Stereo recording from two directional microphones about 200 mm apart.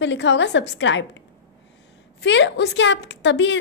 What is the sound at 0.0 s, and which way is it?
A woman's voice, 65° left (ahead or behind).